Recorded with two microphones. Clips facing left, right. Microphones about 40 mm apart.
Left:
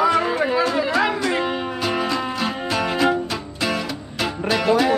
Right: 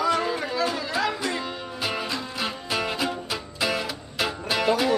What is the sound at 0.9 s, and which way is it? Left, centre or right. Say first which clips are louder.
Music: left 6 dB; left.